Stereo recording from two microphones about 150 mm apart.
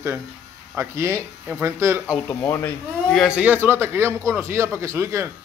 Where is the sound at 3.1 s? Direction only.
5° right (ahead or behind).